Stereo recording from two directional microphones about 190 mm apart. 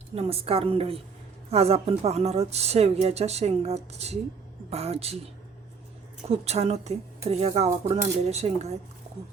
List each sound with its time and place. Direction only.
0.2 s speech: 30° right (ahead or behind)
6.2 s speech: 35° right (ahead or behind)